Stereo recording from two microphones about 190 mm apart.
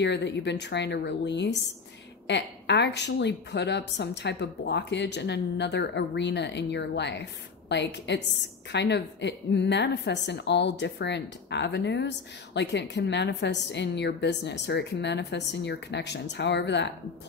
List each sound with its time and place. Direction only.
0.0 s a woman's voice: 65° left (ahead or behind)